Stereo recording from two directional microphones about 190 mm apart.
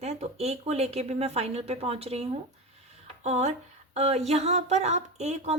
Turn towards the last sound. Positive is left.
turn(degrees=-35)  # may be behind; listen again after turning